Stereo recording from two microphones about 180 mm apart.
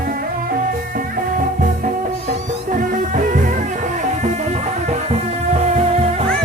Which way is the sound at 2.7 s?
45° right (ahead or behind).